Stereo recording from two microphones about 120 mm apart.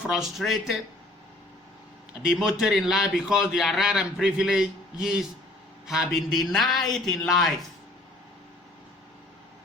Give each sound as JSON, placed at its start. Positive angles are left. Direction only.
{"t": 0.1, "sound": "a man's voice", "side_deg": -5}
{"t": 2.2, "sound": "a man's voice", "side_deg": -5}